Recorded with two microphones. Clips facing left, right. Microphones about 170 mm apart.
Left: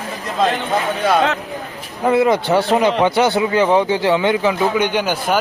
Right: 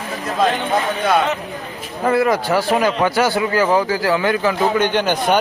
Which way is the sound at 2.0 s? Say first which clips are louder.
Left 2 dB; 20° left (ahead or behind).